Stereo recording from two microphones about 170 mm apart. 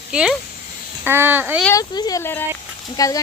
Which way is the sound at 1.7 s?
20° left (ahead or behind).